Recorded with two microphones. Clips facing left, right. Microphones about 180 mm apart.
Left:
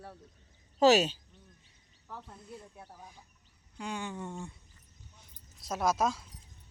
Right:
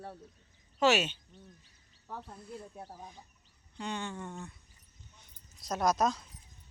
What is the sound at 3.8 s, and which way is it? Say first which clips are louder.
Speech: even; 10° left (ahead or behind).